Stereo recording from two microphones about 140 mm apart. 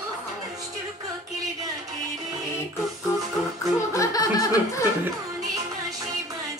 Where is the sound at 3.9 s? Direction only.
25° left (ahead or behind).